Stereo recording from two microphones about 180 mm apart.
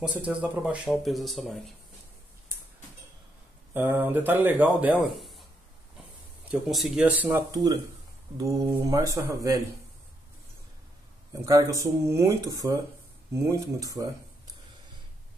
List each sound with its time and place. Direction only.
0.0 s speech: 5° right (ahead or behind)
3.7 s speech: 10° right (ahead or behind)
6.5 s speech: centre (ahead or behind); by 9.6 s 20° right (ahead or behind)
11.4 s speech: 20° right (ahead or behind)